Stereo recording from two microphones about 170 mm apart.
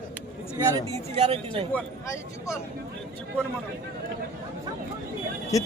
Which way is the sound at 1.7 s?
15° left (ahead or behind).